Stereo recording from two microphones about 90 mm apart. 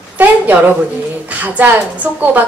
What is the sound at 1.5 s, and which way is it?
Speech, 20° right (ahead or behind).